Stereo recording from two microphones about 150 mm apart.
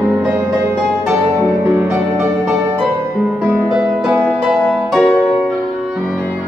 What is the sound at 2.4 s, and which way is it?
Music, centre (ahead or behind).